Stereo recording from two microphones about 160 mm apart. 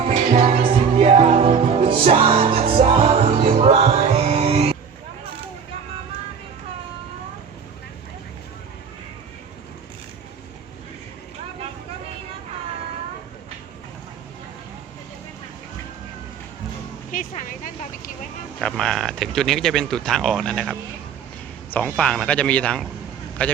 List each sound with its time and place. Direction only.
0.1 s music: 40° right (ahead or behind)
17.1 s a sound: 55° left (ahead or behind)
18.6 s a man's voice: 5° left (ahead or behind)